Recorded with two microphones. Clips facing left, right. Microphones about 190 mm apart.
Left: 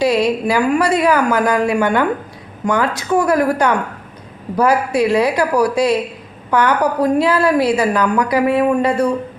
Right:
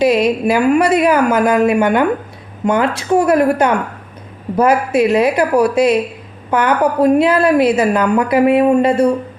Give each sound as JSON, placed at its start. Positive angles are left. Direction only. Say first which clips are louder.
{"t": 0.0, "sound": "a woman's voice", "louder": "right 2 dB", "side_deg": -20}